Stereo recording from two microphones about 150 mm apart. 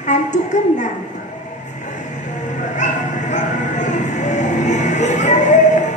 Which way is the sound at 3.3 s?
55° left (ahead or behind).